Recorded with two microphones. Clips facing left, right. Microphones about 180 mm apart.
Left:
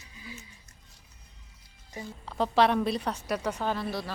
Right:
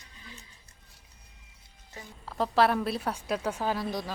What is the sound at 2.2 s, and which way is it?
A woman's voice, centre (ahead or behind).